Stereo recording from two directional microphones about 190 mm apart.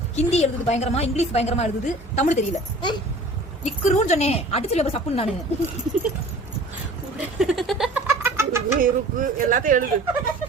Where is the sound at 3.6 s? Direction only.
40° left (ahead or behind).